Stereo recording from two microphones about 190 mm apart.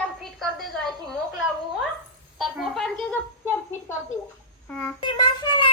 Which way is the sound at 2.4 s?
Centre (ahead or behind).